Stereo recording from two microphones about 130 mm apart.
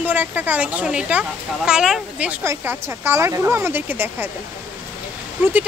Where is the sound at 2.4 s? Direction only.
15° right (ahead or behind).